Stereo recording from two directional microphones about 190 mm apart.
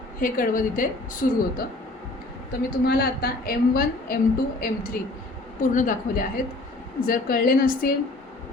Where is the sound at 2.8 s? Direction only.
55° left (ahead or behind).